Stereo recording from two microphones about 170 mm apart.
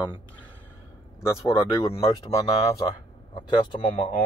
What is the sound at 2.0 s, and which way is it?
Speech, 30° left (ahead or behind).